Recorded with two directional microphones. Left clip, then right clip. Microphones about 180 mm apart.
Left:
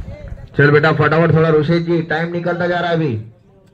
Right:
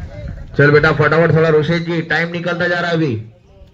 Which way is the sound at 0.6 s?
60° left (ahead or behind).